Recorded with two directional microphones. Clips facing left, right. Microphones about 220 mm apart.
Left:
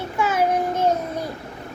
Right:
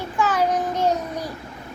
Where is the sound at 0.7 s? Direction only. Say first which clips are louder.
Left 1 dB; 25° left (ahead or behind).